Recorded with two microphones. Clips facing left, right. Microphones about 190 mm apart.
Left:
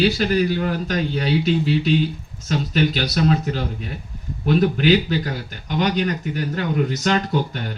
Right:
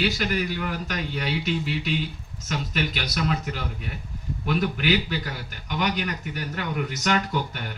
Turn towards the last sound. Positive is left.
turn(degrees=30)  # may be behind; listen again after turning